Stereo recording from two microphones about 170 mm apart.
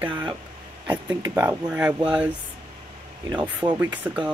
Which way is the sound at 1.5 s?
10° right (ahead or behind).